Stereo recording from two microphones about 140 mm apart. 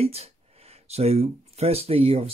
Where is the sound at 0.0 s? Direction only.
45° right (ahead or behind).